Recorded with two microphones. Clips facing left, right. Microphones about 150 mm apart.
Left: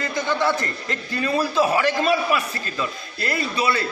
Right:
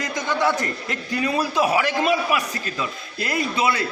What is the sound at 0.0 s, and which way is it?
A man's voice, 15° right (ahead or behind).